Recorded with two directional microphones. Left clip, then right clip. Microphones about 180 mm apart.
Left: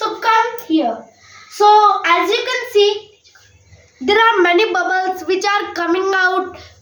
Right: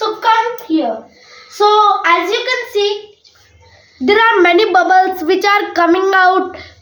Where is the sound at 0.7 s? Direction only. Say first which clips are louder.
Right 1 dB; centre (ahead or behind).